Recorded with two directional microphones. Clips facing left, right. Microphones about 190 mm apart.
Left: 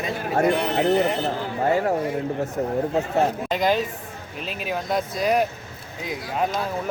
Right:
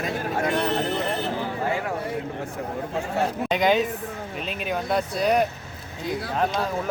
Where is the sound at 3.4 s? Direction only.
Centre (ahead or behind).